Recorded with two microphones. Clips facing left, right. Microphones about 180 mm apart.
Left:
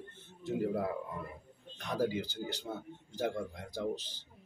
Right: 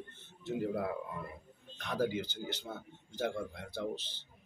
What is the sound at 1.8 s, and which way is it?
A man's voice, 10° left (ahead or behind).